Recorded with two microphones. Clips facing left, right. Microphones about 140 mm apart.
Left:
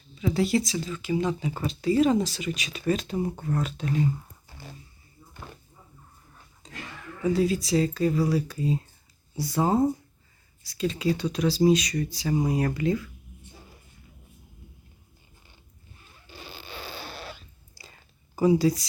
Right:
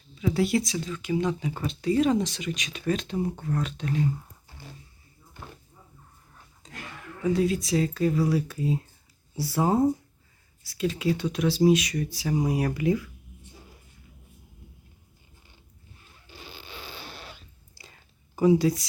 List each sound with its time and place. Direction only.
0.2 s speech: centre (ahead or behind)
7.2 s speech: centre (ahead or behind)
16.4 s zipper: 40° left (ahead or behind)
17.0 s a sound: 80° left
18.3 s speech: centre (ahead or behind)